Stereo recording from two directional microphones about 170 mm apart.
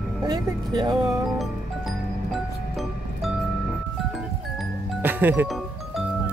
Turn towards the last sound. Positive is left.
turn(degrees=0)  # may be behind; listen again after turning